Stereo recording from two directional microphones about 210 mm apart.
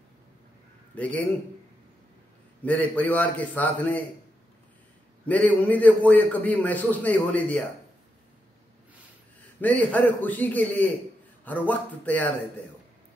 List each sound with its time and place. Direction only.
0.9 s a man's voice: 5° left (ahead or behind)
2.6 s a man's voice: 10° left (ahead or behind)
5.2 s a man's voice: 5° left (ahead or behind)
9.6 s a man's voice: 5° left (ahead or behind)